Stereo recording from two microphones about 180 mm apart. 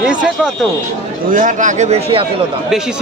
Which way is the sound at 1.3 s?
45° right (ahead or behind).